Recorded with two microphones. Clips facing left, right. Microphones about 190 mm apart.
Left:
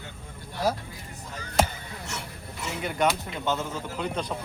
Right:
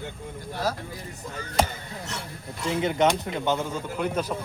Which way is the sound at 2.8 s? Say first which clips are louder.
Right 3 dB; 20° right (ahead or behind).